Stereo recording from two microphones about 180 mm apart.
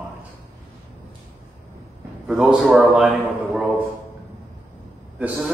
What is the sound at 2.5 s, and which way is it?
A man's voice, centre (ahead or behind).